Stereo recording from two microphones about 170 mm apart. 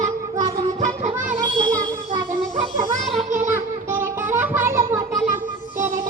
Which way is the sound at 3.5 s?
10° right (ahead or behind).